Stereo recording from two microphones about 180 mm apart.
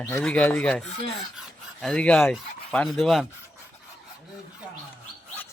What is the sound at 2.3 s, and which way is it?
Speech, 5° left (ahead or behind).